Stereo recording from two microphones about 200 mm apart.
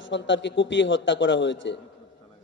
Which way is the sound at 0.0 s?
65° left (ahead or behind).